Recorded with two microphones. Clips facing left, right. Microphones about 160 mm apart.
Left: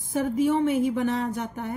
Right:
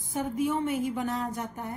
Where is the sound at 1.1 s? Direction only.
75° left (ahead or behind).